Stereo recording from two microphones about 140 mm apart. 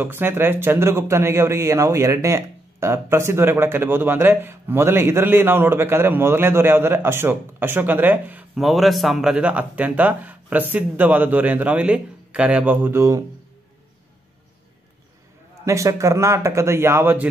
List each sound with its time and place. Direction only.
0.0 s speech: 15° right (ahead or behind)
8.5 s speech: centre (ahead or behind); by 13.2 s 20° right (ahead or behind)
15.6 s speech: 20° right (ahead or behind)